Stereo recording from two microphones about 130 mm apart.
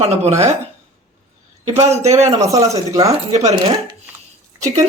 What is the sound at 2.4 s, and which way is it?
Speech, 25° right (ahead or behind).